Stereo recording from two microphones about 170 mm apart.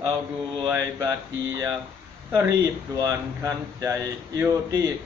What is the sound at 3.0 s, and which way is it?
Speech, 15° right (ahead or behind).